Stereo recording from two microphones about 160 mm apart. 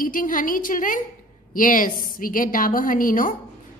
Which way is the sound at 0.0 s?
60° left (ahead or behind).